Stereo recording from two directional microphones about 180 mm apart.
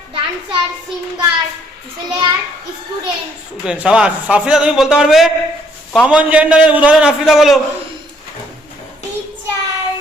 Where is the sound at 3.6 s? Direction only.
5° right (ahead or behind).